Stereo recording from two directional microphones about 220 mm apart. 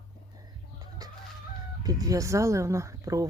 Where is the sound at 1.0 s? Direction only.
15° right (ahead or behind).